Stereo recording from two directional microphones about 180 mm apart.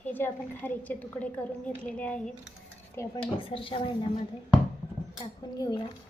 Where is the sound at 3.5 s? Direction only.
30° left (ahead or behind).